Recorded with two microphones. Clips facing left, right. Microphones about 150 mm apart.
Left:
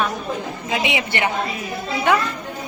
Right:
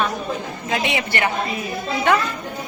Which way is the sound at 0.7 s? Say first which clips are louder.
Even; 15° left (ahead or behind).